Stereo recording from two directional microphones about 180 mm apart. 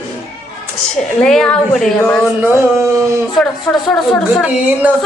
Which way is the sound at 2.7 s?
15° right (ahead or behind).